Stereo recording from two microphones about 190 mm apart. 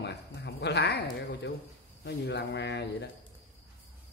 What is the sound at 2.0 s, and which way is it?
Speech, 60° left (ahead or behind).